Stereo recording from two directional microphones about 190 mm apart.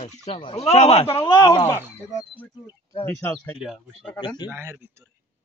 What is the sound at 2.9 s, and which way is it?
Speech, 10° left (ahead or behind).